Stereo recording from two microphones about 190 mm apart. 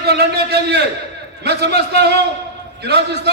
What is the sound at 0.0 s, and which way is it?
A man's voice, 60° right (ahead or behind).